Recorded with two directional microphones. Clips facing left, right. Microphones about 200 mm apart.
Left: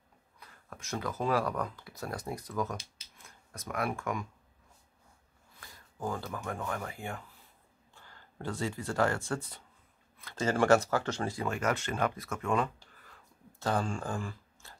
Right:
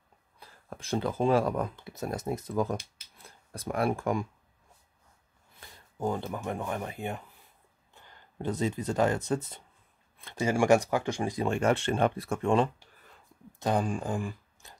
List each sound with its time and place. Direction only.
0.4 s speech: 30° right (ahead or behind)
5.6 s speech: 25° right (ahead or behind)
11.4 s speech: 30° right (ahead or behind)
13.6 s speech: 15° right (ahead or behind)